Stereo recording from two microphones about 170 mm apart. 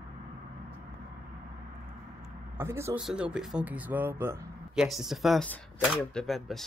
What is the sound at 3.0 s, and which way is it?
Speech, 5° right (ahead or behind).